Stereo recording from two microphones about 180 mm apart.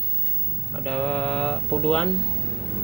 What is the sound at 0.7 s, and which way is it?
Speech, 5° left (ahead or behind).